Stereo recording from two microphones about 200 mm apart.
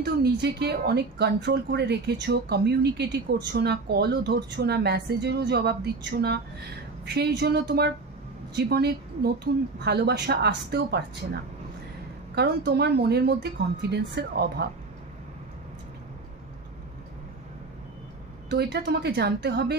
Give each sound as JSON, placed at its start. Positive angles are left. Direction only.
{"t": 0.0, "sound": "a woman's voice", "side_deg": -55}
{"t": 12.4, "sound": "a woman's voice", "side_deg": -55}
{"t": 18.5, "sound": "a woman's voice", "side_deg": -55}